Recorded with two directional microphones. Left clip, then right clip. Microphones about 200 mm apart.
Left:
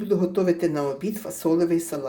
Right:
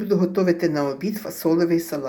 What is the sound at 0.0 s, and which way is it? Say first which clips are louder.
Speech: right 2 dB; 5° left (ahead or behind).